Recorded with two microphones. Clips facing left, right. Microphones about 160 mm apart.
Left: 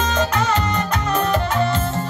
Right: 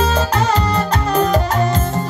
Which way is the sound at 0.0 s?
35° right (ahead or behind).